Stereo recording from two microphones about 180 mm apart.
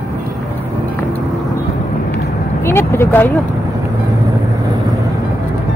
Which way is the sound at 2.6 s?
15° left (ahead or behind).